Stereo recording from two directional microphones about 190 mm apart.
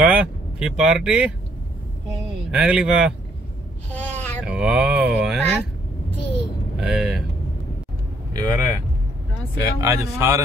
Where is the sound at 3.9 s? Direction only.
10° left (ahead or behind).